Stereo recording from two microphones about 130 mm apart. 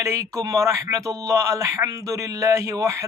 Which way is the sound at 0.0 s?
20° right (ahead or behind).